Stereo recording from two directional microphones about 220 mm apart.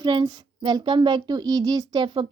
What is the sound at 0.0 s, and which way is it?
Speech, 20° right (ahead or behind).